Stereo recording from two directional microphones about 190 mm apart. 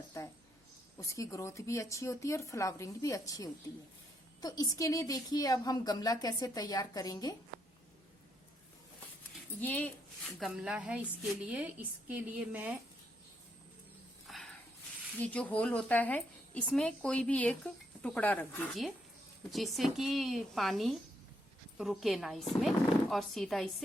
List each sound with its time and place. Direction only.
0.1 s a sound: 15° left (ahead or behind)
0.9 s a woman's voice: 15° left (ahead or behind)
9.6 s a woman's voice: 10° left (ahead or behind)
10.4 s a woman's voice: 5° right (ahead or behind)
14.3 s horse: centre (ahead or behind)
15.2 s a woman's voice: 5° left (ahead or behind)